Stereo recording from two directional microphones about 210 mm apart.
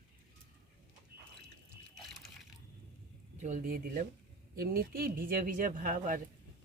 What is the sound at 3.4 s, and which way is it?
Speech, 40° right (ahead or behind).